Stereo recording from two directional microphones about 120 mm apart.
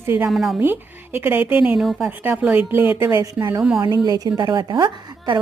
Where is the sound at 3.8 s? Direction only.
35° right (ahead or behind).